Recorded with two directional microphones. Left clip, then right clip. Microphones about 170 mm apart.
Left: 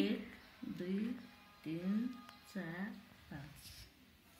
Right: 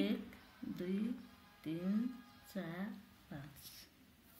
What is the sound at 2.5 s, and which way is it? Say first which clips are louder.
Speech: right 1 dB; 10° right (ahead or behind).